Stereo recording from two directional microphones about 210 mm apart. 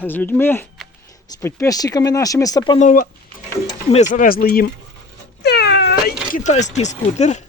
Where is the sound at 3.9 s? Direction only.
35° left (ahead or behind).